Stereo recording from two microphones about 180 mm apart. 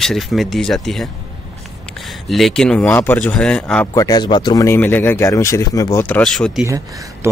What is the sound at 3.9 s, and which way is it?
Speech, 20° left (ahead or behind).